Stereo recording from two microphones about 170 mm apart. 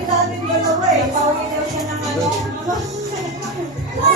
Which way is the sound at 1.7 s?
Centre (ahead or behind).